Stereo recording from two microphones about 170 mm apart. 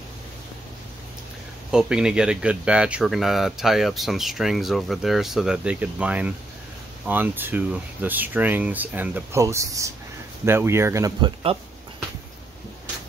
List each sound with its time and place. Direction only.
1.7 s speech: 5° right (ahead or behind); by 11.5 s 25° right (ahead or behind)